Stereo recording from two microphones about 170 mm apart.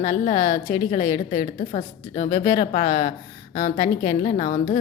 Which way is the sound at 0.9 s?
20° left (ahead or behind).